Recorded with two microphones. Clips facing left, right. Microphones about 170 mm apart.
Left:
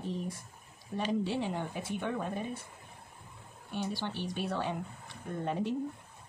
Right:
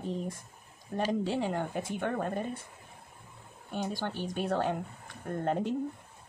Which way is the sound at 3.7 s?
45° right (ahead or behind).